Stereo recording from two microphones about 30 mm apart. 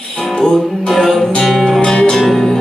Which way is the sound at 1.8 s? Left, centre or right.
Left.